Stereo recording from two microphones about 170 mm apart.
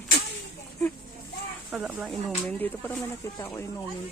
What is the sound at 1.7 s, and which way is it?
Speech, 5° right (ahead or behind).